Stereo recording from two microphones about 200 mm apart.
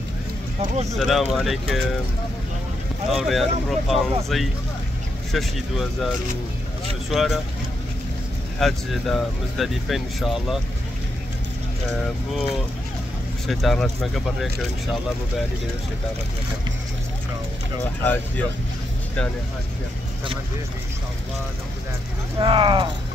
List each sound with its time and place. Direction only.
0.9 s speech: centre (ahead or behind)
3.1 s speech: centre (ahead or behind)
7.1 s speech: centre (ahead or behind)
8.5 s speech: centre (ahead or behind)
13.5 s speech: centre (ahead or behind)
18.0 s speech: 10° left (ahead or behind)
22.4 s speech: 25° right (ahead or behind)